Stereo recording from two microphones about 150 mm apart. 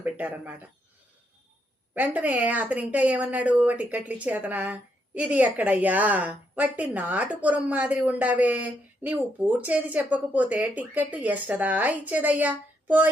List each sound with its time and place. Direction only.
0.0 s speech: 10° right (ahead or behind)
2.0 s a woman's voice: 10° right (ahead or behind)